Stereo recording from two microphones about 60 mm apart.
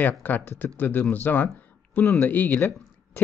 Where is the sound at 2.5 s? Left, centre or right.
Left.